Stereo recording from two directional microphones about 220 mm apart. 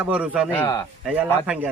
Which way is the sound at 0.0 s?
5° right (ahead or behind).